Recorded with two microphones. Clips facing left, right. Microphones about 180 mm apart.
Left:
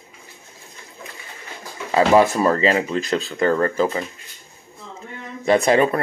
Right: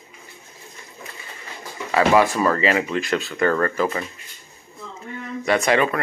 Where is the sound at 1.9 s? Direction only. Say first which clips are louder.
Left 2 dB; 25° left (ahead or behind).